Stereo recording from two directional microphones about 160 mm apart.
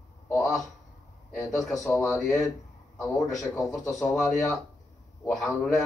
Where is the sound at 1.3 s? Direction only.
15° left (ahead or behind).